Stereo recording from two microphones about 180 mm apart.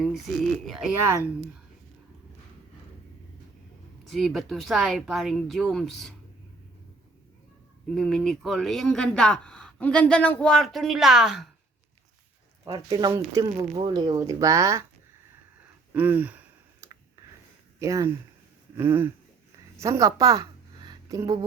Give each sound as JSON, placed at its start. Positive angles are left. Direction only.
{"t": 0.0, "sound": "speech", "side_deg": 0}
{"t": 4.0, "sound": "speech", "side_deg": 0}
{"t": 7.9, "sound": "speech", "side_deg": 0}
{"t": 12.6, "sound": "speech", "side_deg": -20}
{"t": 15.9, "sound": "a sound", "side_deg": -10}
{"t": 17.7, "sound": "speech", "side_deg": -15}
{"t": 18.8, "sound": "a sound", "side_deg": -10}
{"t": 19.8, "sound": "a woman's voice", "side_deg": -20}